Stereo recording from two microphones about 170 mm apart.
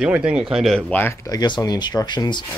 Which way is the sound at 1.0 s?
15° left (ahead or behind).